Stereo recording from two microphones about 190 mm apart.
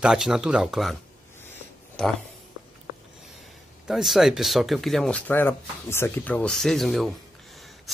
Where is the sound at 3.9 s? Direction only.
Centre (ahead or behind).